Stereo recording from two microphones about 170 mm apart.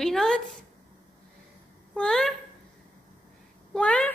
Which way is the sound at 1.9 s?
5° left (ahead or behind).